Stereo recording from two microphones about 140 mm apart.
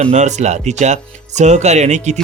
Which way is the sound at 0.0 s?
55° right (ahead or behind).